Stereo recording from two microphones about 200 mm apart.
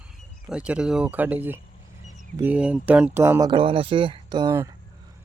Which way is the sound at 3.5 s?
25° right (ahead or behind).